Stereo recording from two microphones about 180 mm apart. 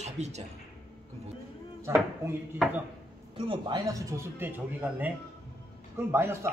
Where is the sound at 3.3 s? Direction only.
30° right (ahead or behind); by 6.5 s 15° right (ahead or behind).